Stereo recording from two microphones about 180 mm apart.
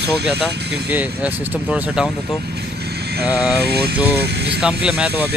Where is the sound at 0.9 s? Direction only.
5° right (ahead or behind).